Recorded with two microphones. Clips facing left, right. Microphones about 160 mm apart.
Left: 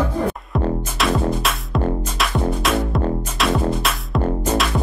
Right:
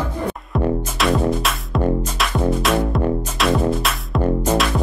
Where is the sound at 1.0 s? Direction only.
Centre (ahead or behind).